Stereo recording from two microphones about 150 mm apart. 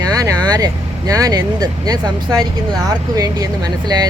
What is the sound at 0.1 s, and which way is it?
Speech, 25° right (ahead or behind).